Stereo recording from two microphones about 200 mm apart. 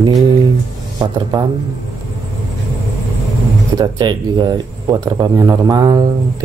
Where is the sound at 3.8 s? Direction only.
20° right (ahead or behind).